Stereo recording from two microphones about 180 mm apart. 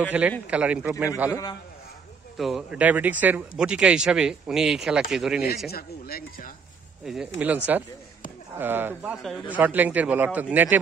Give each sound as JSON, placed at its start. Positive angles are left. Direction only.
{"t": 0.2, "sound": "speech", "side_deg": -5}
{"t": 1.3, "sound": "a man's voice", "side_deg": 20}
{"t": 2.3, "sound": "speech", "side_deg": 0}
{"t": 5.7, "sound": "speech", "side_deg": 55}
{"t": 7.3, "sound": "speech", "side_deg": -5}